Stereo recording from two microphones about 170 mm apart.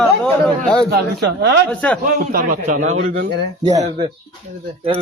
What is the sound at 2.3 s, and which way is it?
Speech, 50° right (ahead or behind).